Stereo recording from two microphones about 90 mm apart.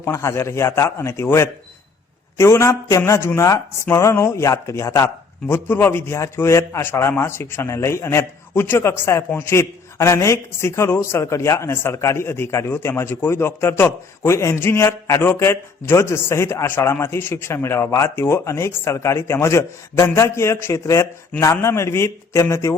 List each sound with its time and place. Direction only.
0.0 s a man's voice: 30° left (ahead or behind)
5.5 s a man's voice: 25° left (ahead or behind)